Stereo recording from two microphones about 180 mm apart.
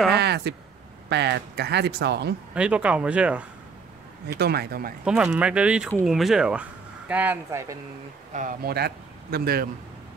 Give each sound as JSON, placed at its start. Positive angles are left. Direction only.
{"t": 0.2, "sound": "speech", "side_deg": -65}
{"t": 2.5, "sound": "speech", "side_deg": -5}
{"t": 4.4, "sound": "speech", "side_deg": -60}
{"t": 5.0, "sound": "speech", "side_deg": -5}
{"t": 8.3, "sound": "speech", "side_deg": -45}